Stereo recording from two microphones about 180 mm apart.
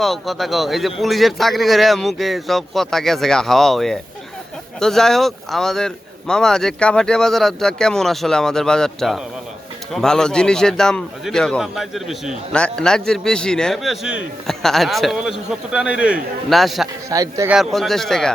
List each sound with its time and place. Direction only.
0.0 s a man's voice: centre (ahead or behind)
17.1 s a man's voice: 20° right (ahead or behind)
17.5 s a man's voice: centre (ahead or behind)